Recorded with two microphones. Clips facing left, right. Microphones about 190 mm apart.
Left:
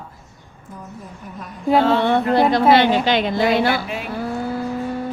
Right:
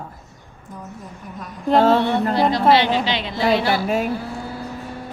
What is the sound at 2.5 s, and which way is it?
A woman's voice, 50° left (ahead or behind).